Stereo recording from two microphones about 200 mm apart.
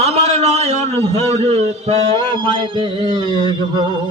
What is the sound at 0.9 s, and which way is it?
A man's voice, 30° right (ahead or behind).